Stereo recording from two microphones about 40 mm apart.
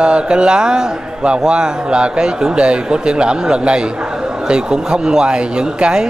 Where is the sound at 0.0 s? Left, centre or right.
Right.